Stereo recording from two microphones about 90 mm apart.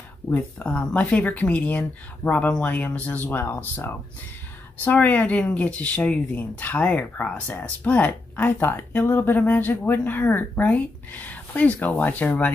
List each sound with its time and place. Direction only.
0.3 s speech: 15° left (ahead or behind)